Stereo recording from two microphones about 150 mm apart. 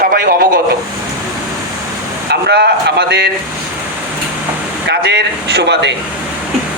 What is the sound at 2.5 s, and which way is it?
Speech, 90° right.